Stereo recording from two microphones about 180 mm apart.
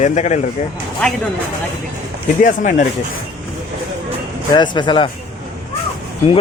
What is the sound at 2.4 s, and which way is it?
Speech, 45° left (ahead or behind).